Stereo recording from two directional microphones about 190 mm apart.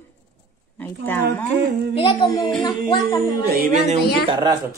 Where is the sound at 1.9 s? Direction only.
25° left (ahead or behind).